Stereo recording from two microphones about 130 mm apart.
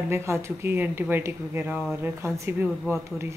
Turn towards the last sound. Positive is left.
turn(degrees=-20)  # may be behind; listen again after turning